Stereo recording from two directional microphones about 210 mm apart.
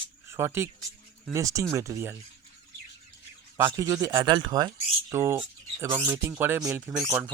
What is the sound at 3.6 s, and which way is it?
Speech, 15° right (ahead or behind).